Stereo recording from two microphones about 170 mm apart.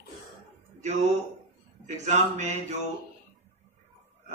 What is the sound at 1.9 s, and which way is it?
Speech, 45° right (ahead or behind).